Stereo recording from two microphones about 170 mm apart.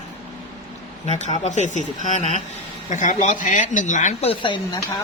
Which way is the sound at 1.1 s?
40° left (ahead or behind).